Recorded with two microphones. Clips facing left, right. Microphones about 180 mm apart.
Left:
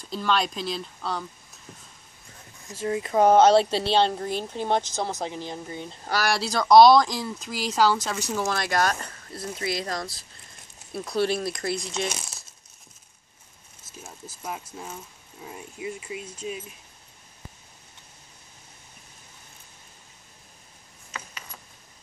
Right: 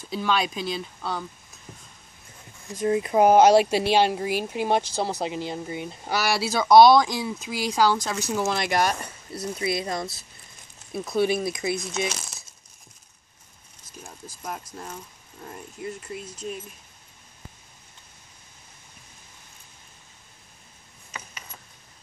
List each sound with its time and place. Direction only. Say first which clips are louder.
0.0 s speech: even; centre (ahead or behind)
2.7 s speech: right 4 dB; 20° right (ahead or behind)
3.2 s speech: right 1 dB; 10° right (ahead or behind)
8.5 s speech: right 1 dB; 15° right (ahead or behind)
9.8 s speech: right 2 dB; 20° right (ahead or behind)
10.9 s speech: right 2 dB; 5° right (ahead or behind)
12.2 s crumpling: even; 5° left (ahead or behind)
13.9 s speech: even; 5° left (ahead or behind)